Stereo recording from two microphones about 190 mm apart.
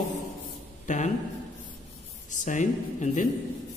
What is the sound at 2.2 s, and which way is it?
A man's voice, 40° left (ahead or behind).